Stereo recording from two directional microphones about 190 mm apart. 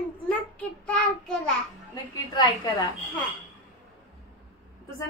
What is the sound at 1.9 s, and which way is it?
Speech, 20° left (ahead or behind).